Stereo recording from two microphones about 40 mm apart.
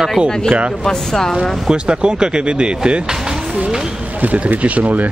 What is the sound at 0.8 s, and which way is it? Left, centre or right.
Speech, centre.